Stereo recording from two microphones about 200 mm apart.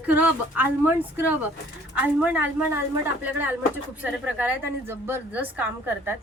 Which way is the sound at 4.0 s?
10° right (ahead or behind).